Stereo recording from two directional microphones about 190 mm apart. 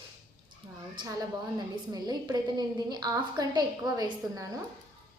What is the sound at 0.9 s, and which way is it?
A woman's voice, 20° right (ahead or behind).